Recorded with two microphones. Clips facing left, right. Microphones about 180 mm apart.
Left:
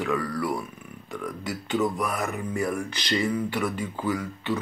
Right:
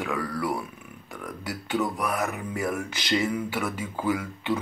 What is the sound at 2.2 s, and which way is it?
Speech, 10° right (ahead or behind).